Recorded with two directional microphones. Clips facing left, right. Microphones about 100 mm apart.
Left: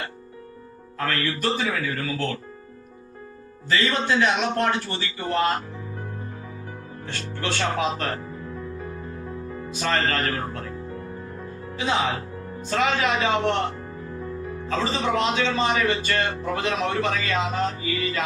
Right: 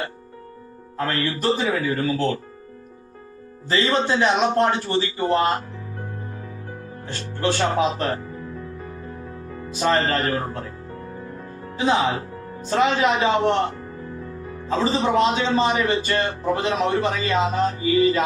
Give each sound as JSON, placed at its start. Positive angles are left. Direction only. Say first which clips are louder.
{"t": 0.9, "sound": "speech", "louder": "right 2 dB", "side_deg": -30}
{"t": 3.7, "sound": "speech", "louder": "right 2 dB", "side_deg": -30}
{"t": 7.1, "sound": "speech", "louder": "right 5 dB", "side_deg": -30}
{"t": 9.7, "sound": "speech", "louder": "right 4 dB", "side_deg": -30}
{"t": 11.8, "sound": "a man's voice", "louder": "right 4 dB", "side_deg": -30}
{"t": 14.7, "sound": "a man's voice", "louder": "right 4 dB", "side_deg": -30}